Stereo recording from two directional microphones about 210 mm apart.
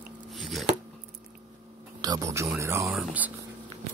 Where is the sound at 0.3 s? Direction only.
Centre (ahead or behind).